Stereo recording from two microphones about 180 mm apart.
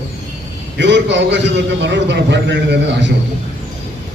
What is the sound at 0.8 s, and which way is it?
A man's voice, 80° right.